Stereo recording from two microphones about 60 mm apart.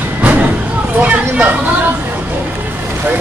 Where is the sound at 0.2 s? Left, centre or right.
Right.